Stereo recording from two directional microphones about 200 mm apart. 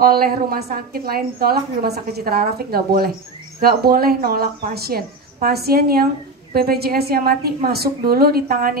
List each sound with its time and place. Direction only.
0.0 s a woman's voice: 50° right (ahead or behind)